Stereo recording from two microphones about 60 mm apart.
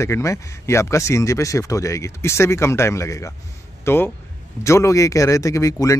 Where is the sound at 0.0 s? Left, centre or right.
Left.